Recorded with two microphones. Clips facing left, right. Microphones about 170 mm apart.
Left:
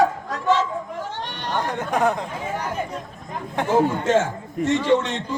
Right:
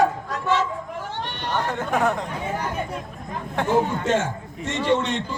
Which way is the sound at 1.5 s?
15° left (ahead or behind).